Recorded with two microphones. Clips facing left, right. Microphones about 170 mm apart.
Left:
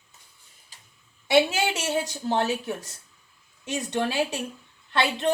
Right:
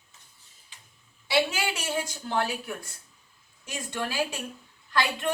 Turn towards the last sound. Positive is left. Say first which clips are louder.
# left 3 dB
turn(degrees=25)  # may be behind; listen again after turning